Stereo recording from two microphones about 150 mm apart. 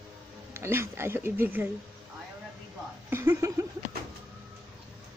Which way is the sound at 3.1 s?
15° right (ahead or behind).